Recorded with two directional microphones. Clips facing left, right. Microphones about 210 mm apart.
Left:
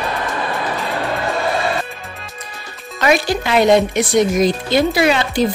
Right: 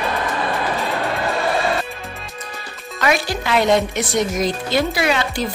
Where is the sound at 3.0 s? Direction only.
25° left (ahead or behind).